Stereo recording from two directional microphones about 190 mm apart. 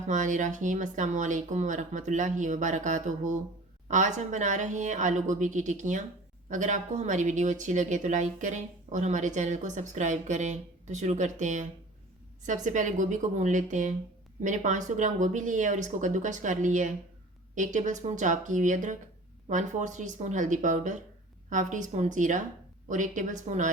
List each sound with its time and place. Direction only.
0.1 s speech: 40° right (ahead or behind)